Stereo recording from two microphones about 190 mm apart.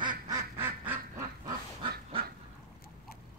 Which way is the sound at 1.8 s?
30° right (ahead or behind).